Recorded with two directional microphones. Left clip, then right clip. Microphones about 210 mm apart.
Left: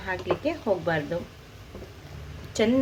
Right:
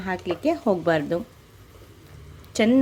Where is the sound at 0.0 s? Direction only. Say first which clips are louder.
Right 2 dB; 55° right (ahead or behind).